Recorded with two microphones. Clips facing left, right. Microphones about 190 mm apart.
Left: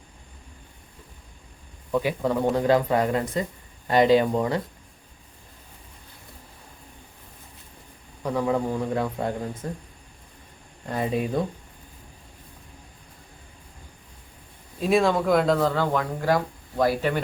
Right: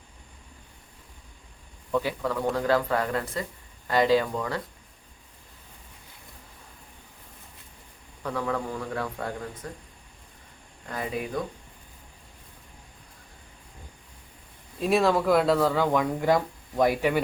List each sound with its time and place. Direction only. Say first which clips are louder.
1.9 s speech: left 3 dB; 15° left (ahead or behind)
8.2 s speech: left 5 dB; 15° left (ahead or behind)
10.8 s speech: left 6 dB; 25° left (ahead or behind)
14.8 s speech: left 1 dB; centre (ahead or behind)